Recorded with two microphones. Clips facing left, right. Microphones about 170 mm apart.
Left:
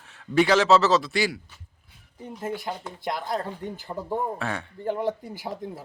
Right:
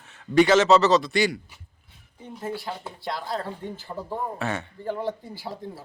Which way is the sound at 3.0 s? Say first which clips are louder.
Left 2 dB; 20° left (ahead or behind).